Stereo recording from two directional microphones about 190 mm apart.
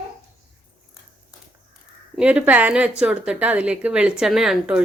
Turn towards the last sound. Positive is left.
turn(degrees=0)  # may be behind; listen again after turning